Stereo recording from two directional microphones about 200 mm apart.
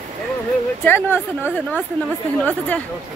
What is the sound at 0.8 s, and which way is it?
Speech, 10° left (ahead or behind).